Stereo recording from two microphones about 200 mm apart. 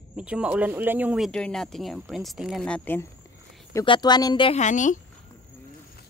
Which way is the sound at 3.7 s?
20° left (ahead or behind).